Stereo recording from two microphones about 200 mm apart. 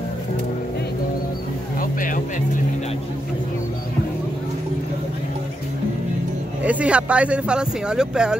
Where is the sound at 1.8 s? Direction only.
40° left (ahead or behind).